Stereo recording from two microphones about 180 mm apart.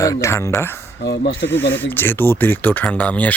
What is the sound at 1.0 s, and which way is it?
Speech, 65° left (ahead or behind).